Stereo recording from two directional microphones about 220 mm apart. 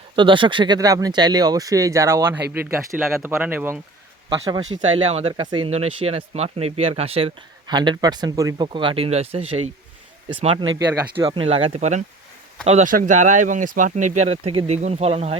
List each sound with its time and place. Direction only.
0.2 s speech: 20° right (ahead or behind)
3.0 s speech: centre (ahead or behind); by 10.7 s 25° right (ahead or behind)
10.8 s speech: 5° right (ahead or behind)
11.1 s speech: 25° right (ahead or behind)